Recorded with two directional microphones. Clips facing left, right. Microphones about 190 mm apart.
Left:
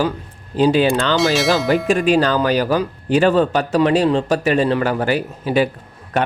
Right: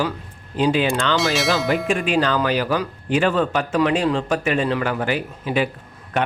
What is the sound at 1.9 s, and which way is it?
A man's voice, 40° left (ahead or behind).